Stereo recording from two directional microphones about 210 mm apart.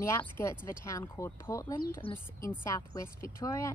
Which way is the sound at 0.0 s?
15° left (ahead or behind).